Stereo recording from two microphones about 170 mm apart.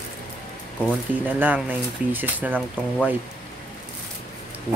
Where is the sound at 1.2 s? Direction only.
10° right (ahead or behind).